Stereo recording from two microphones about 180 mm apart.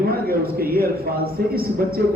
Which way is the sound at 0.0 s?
60° right (ahead or behind).